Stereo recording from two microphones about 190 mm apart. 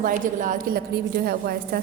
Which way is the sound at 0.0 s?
45° right (ahead or behind).